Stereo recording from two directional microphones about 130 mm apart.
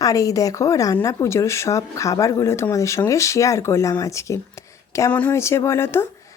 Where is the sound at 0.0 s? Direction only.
25° left (ahead or behind).